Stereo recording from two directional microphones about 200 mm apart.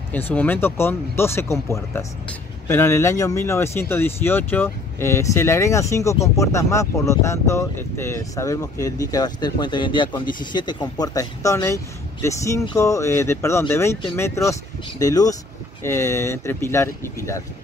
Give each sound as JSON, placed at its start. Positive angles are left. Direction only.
{"t": 0.1, "sound": "speech", "side_deg": 10}